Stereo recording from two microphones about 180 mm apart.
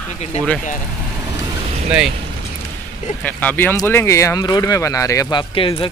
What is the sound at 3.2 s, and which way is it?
Speech, 10° left (ahead or behind).